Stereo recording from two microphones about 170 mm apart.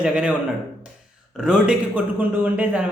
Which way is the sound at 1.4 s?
5° right (ahead or behind).